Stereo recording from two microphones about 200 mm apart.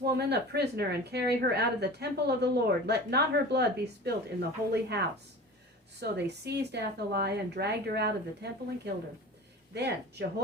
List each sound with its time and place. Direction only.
0.0 s a woman's voice: 55° right (ahead or behind)